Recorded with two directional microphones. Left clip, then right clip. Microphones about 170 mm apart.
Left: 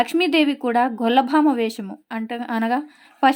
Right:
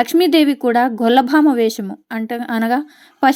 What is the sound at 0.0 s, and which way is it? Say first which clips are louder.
A woman's voice: right 5 dB; 30° right (ahead or behind).